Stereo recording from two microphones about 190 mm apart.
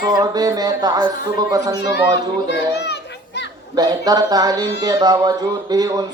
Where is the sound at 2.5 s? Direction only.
60° left (ahead or behind).